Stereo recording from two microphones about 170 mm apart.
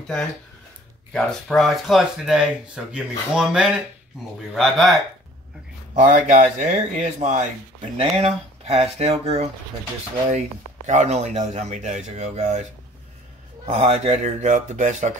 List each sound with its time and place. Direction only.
1.1 s speech: centre (ahead or behind)
5.9 s speech: 50° right (ahead or behind)
10.9 s speech: 40° right (ahead or behind)
13.7 s speech: 40° right (ahead or behind)